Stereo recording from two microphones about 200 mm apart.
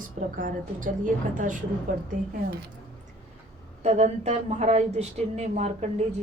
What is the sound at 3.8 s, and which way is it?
A woman's voice, 35° right (ahead or behind).